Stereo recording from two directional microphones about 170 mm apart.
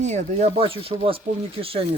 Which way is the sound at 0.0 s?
45° right (ahead or behind).